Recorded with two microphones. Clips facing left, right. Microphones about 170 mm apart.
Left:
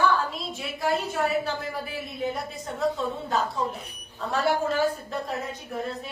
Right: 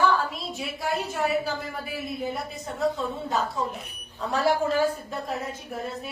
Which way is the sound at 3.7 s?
35° left (ahead or behind).